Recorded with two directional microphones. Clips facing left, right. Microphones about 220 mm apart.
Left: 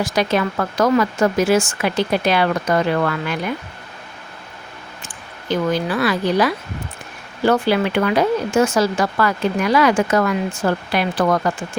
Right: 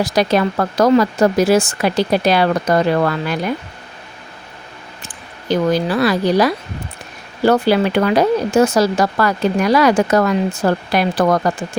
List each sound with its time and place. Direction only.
0.0 s speech: 35° right (ahead or behind)
5.0 s speech: 35° right (ahead or behind)